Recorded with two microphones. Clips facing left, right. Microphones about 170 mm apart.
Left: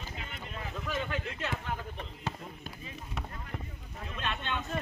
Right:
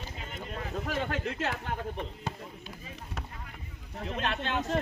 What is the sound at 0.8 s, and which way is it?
Speech, 75° right (ahead or behind).